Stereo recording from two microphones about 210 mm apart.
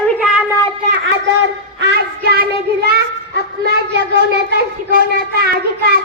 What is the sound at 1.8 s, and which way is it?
A child's voice, 50° right (ahead or behind).